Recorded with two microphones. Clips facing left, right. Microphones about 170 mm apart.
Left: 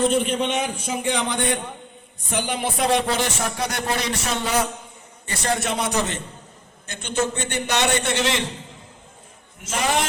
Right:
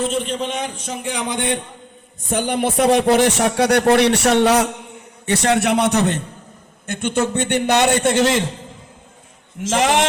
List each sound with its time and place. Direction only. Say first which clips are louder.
0.0 s a man's voice: left 1 dB; centre (ahead or behind); by 1.5 s 15° right (ahead or behind)
2.3 s speech: right 6 dB; 50° right (ahead or behind)
6.8 s a man's voice: right 5 dB; 55° right (ahead or behind)
9.6 s a man's voice: right 6 dB; 80° right